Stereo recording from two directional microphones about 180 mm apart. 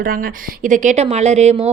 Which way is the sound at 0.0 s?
55° right (ahead or behind).